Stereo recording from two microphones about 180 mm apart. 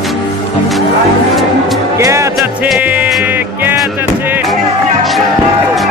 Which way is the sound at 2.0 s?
15° right (ahead or behind).